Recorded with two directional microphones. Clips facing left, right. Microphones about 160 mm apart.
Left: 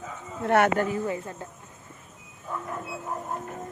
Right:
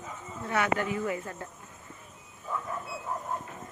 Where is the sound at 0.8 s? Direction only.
35° left (ahead or behind).